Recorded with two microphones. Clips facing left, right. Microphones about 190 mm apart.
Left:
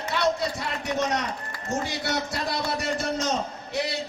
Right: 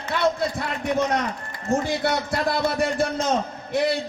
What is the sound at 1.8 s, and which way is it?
A man's voice, 55° right (ahead or behind).